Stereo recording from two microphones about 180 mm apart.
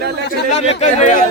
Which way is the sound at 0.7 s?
40° left (ahead or behind).